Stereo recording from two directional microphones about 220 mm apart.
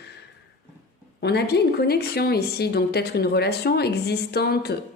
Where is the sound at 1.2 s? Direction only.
45° left (ahead or behind).